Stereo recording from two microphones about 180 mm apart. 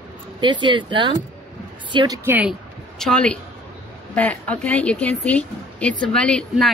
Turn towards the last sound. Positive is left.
turn(degrees=5)  # may be behind; listen again after turning